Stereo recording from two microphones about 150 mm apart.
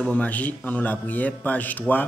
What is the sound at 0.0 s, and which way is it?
A man's voice, 10° left (ahead or behind).